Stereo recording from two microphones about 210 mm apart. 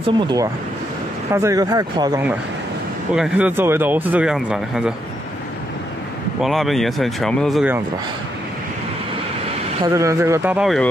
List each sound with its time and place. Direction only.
0.2 s speech: 20° right (ahead or behind)
3.2 s speech: 5° right (ahead or behind)
6.4 s speech: centre (ahead or behind)
9.8 s speech: 15° right (ahead or behind)